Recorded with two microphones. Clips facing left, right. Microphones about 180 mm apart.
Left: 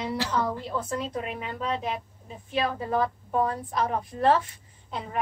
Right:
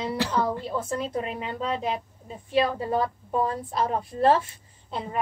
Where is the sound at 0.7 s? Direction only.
30° right (ahead or behind).